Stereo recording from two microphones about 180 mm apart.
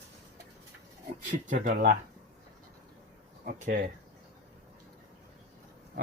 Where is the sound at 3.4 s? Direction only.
55° right (ahead or behind).